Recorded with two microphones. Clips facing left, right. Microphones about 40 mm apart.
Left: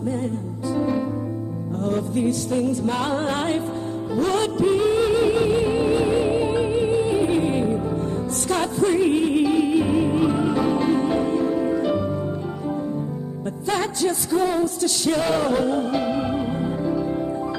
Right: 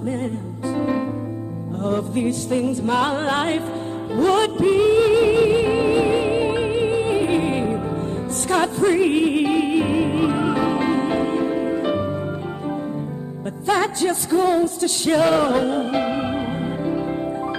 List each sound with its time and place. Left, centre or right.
0.7 s music: right
8.9 s music: right
13.7 s music: right